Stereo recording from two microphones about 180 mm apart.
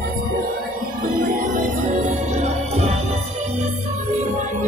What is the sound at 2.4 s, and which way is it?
Music, 35° right (ahead or behind).